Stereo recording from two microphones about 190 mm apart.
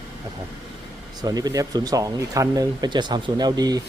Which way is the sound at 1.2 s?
20° right (ahead or behind).